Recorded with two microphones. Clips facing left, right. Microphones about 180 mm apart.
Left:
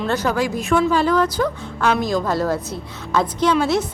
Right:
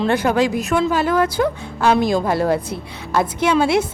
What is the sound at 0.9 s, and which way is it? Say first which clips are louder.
Speech: left 1 dB; 45° right (ahead or behind).